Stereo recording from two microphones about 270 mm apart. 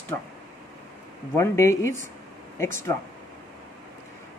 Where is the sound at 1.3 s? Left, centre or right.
Centre.